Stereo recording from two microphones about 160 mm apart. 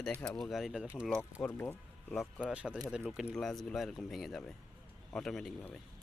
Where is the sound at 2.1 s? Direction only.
Centre (ahead or behind).